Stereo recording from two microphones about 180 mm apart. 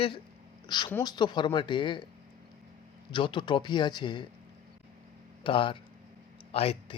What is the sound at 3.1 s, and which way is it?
Speech, 25° left (ahead or behind).